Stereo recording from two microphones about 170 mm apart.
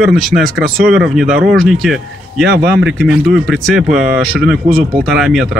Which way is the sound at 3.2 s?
Centre (ahead or behind).